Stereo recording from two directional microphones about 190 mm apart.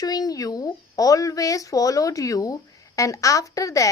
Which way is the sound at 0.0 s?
20° left (ahead or behind).